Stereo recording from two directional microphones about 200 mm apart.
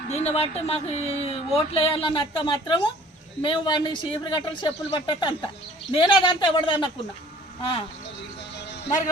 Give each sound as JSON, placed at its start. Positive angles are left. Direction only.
{"t": 0.1, "sound": "speech", "side_deg": 30}